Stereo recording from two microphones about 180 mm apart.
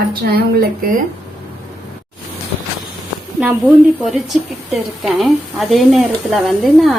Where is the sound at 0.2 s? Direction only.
60° right (ahead or behind).